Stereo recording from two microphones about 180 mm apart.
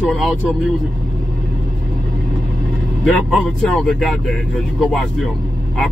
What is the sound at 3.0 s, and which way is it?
Speech, 5° left (ahead or behind).